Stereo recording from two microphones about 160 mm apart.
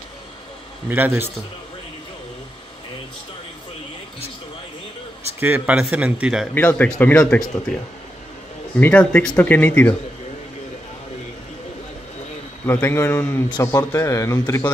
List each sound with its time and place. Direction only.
0.8 s a man's voice: 10° right (ahead or behind)
5.4 s a man's voice: 10° right (ahead or behind)
6.5 s a man's voice: 10° left (ahead or behind)
8.7 s a man's voice: 10° left (ahead or behind)
12.6 s a man's voice: 15° left (ahead or behind)